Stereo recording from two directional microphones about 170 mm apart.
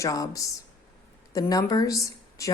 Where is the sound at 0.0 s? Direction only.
20° left (ahead or behind).